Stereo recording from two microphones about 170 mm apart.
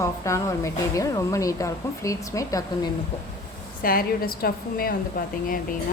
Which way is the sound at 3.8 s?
60° left (ahead or behind).